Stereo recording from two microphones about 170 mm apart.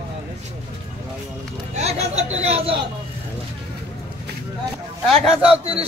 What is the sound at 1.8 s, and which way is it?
Speech, 40° right (ahead or behind).